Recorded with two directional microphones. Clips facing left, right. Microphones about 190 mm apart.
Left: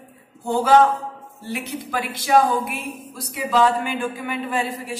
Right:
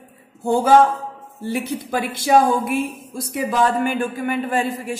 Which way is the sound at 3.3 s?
50° right (ahead or behind).